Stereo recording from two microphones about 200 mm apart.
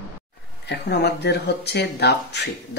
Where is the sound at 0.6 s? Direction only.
55° left (ahead or behind).